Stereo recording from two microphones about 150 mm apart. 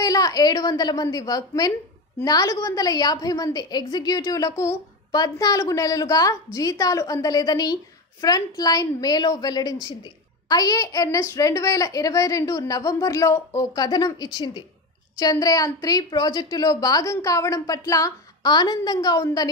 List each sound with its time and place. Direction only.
0.0 s a woman's voice: 25° left (ahead or behind)